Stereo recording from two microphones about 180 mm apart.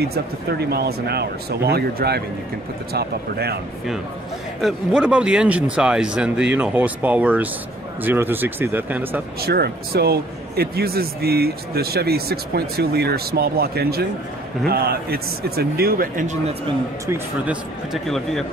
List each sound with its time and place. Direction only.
0.0 s speech: 60° right (ahead or behind)
4.6 s speech: centre (ahead or behind)
9.4 s speech: 60° right (ahead or behind); by 16.5 s 45° right (ahead or behind)
18.0 s speech: centre (ahead or behind)